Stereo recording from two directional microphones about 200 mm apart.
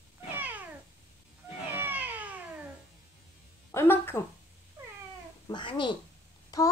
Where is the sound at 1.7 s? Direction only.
10° right (ahead or behind).